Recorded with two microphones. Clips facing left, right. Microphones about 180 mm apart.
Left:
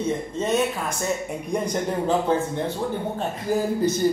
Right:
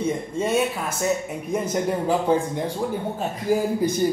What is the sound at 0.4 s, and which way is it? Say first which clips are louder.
A man's voice: right 1 dB; 10° right (ahead or behind).